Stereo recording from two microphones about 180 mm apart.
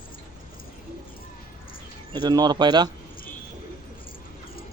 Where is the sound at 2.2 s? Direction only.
25° right (ahead or behind).